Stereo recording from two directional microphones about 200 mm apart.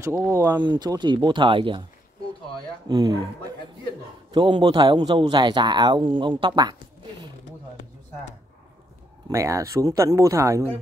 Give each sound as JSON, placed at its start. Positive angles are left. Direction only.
{"t": 0.0, "sound": "a man's voice", "side_deg": -15}
{"t": 2.9, "sound": "a man's voice", "side_deg": -20}
{"t": 9.3, "sound": "speech", "side_deg": -15}